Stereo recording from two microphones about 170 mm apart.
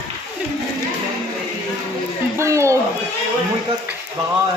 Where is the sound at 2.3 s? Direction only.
15° right (ahead or behind).